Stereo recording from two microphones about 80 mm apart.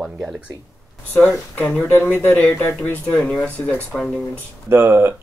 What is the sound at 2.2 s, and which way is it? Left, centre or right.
Speech, centre.